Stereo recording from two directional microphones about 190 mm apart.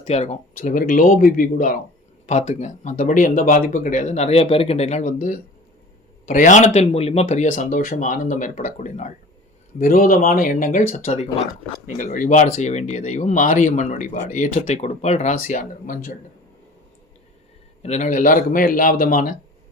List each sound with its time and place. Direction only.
0.0 s speech: 35° left (ahead or behind)
17.8 s speech: 40° left (ahead or behind)